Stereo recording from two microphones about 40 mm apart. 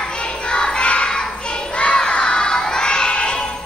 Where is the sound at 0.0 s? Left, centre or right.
Left.